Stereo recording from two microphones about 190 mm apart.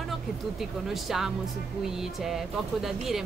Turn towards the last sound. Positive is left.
turn(degrees=0)  # may be behind; listen again after turning